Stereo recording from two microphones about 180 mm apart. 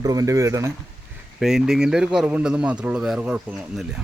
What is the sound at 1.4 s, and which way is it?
Speech, 5° right (ahead or behind).